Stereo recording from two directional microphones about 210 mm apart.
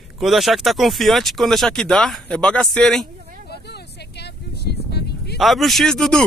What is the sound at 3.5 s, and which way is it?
Vehicle, 50° left (ahead or behind).